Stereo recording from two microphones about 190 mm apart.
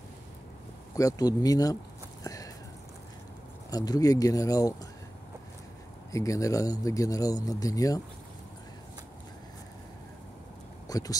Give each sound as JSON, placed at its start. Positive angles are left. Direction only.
{"t": 0.9, "sound": "speech", "side_deg": 20}
{"t": 2.2, "sound": "a sound", "side_deg": 20}
{"t": 3.7, "sound": "speech", "side_deg": 20}
{"t": 6.1, "sound": "speech", "side_deg": 15}
{"t": 10.9, "sound": "speech", "side_deg": 20}